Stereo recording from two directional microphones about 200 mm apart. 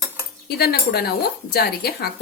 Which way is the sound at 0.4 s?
50° left (ahead or behind).